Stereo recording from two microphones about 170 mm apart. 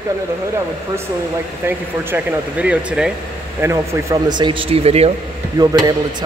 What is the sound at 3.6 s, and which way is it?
Speech, 15° right (ahead or behind).